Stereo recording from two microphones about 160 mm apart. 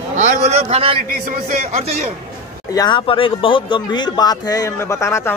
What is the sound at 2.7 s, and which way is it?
A man's voice, 25° left (ahead or behind).